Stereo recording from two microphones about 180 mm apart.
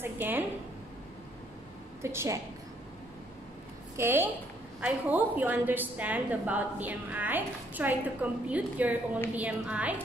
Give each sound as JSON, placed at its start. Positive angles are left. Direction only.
{"t": 0.0, "sound": "a sound", "side_deg": -10}
{"t": 2.0, "sound": "a woman's voice", "side_deg": -15}
{"t": 3.9, "sound": "a woman's voice", "side_deg": -10}